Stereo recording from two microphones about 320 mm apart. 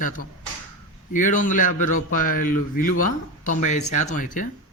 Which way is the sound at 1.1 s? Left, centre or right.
Left.